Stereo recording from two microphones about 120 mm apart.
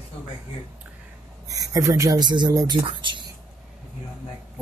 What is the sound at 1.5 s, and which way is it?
Speech, 30° right (ahead or behind).